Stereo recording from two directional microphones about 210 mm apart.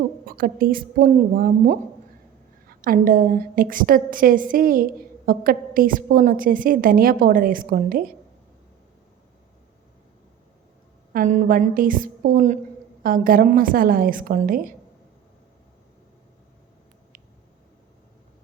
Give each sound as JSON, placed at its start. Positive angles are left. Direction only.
{"t": 0.3, "sound": "a woman's voice", "side_deg": -45}
{"t": 11.1, "sound": "a woman's voice", "side_deg": -40}